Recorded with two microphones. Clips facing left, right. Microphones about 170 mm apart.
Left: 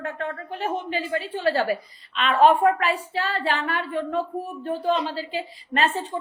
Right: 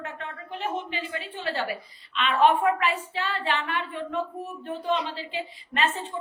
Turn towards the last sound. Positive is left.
turn(degrees=40)  # may be behind; listen again after turning